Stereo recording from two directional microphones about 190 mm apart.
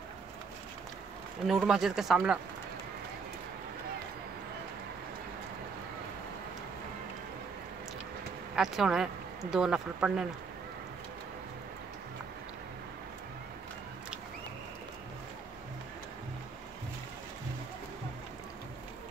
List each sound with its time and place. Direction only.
1.5 s speech: 5° right (ahead or behind)
8.5 s speech: centre (ahead or behind)